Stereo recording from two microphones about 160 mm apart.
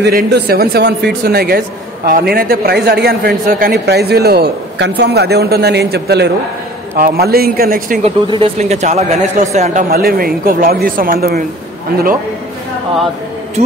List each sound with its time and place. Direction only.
0.0 s speech: 80° right
7.0 s speech: 75° right (ahead or behind)
8.0 s speech: 35° right (ahead or behind)
9.8 s speech: 70° right (ahead or behind)